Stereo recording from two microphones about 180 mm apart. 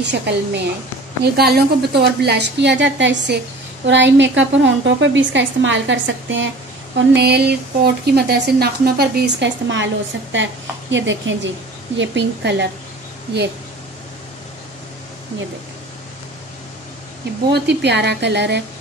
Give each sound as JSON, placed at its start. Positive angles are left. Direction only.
{"t": 0.0, "sound": "a woman's voice", "side_deg": -70}
{"t": 7.1, "sound": "a woman's voice", "side_deg": -65}
{"t": 12.0, "sound": "a woman's voice", "side_deg": -80}
{"t": 17.5, "sound": "a woman's voice", "side_deg": -70}